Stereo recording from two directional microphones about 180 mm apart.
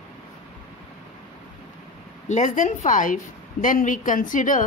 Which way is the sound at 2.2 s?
45° left (ahead or behind).